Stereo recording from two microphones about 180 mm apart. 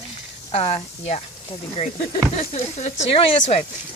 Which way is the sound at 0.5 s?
35° left (ahead or behind).